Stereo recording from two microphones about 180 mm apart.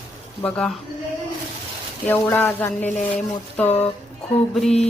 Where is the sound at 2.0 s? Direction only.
10° left (ahead or behind).